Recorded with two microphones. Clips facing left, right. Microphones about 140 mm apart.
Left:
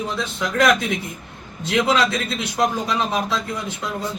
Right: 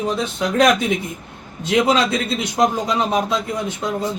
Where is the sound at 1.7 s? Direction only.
25° right (ahead or behind).